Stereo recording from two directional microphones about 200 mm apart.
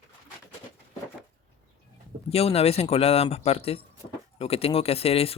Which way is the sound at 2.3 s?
30° left (ahead or behind).